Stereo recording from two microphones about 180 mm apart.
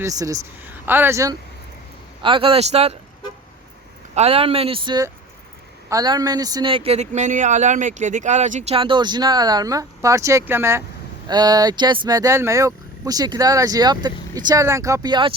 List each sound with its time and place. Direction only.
0.0 s speech: 20° right (ahead or behind)
2.2 s speech: 30° right (ahead or behind)
4.1 s speech: 35° right (ahead or behind)